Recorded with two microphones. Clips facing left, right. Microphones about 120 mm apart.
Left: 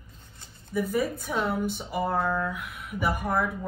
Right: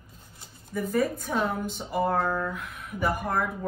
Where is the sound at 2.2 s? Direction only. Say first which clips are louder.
Left 1 dB; 10° right (ahead or behind).